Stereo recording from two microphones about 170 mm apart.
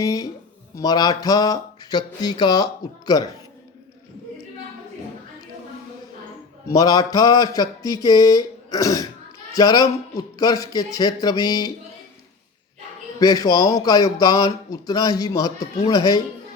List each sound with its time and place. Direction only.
0.0 s speech: 20° left (ahead or behind)
6.7 s speech: 20° left (ahead or behind)
13.1 s speech: 20° left (ahead or behind)